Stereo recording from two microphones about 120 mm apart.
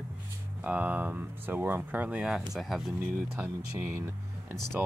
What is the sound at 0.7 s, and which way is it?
Speech, 15° right (ahead or behind).